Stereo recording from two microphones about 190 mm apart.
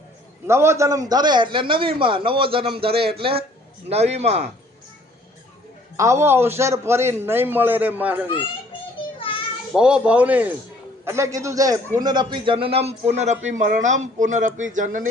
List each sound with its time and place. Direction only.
0.4 s a man's voice: 15° right (ahead or behind); by 4.4 s 35° right (ahead or behind)
6.0 s a man's voice: 15° right (ahead or behind)
9.7 s a man's voice: 5° right (ahead or behind); by 15.0 s 40° right (ahead or behind)